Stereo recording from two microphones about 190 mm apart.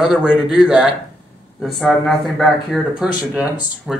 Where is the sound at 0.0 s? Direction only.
5° right (ahead or behind).